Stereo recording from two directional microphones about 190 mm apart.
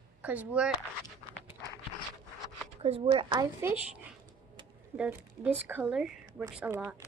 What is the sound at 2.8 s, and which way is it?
Speech, 30° right (ahead or behind).